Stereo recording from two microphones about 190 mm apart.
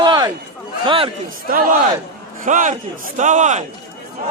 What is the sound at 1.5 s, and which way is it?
A man's voice, 45° right (ahead or behind).